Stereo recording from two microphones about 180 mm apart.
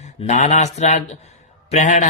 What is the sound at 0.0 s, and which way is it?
Speech, 40° left (ahead or behind).